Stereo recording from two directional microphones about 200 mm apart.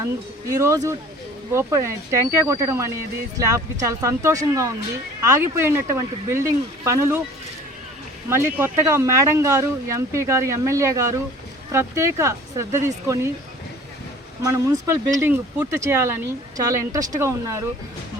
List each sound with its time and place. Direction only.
0.4 s speech: 15° right (ahead or behind)
8.3 s speech: 10° right (ahead or behind)
14.4 s speech: 15° right (ahead or behind)